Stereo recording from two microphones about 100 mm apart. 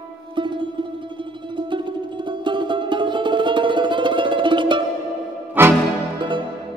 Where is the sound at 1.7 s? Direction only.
55° right (ahead or behind).